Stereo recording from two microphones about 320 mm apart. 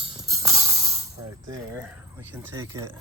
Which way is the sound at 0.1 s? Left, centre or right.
Centre.